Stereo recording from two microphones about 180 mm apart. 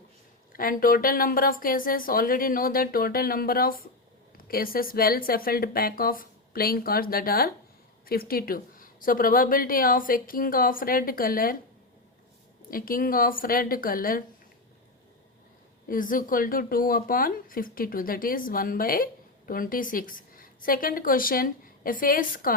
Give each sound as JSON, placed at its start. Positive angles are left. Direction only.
{"t": 0.5, "sound": "speech", "side_deg": 50}
{"t": 12.7, "sound": "speech", "side_deg": 50}
{"t": 15.9, "sound": "speech", "side_deg": 50}